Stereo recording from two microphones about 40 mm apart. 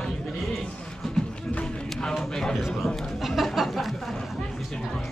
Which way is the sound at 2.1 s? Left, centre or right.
Centre.